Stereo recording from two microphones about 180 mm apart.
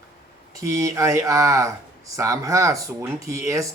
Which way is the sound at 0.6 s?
15° right (ahead or behind).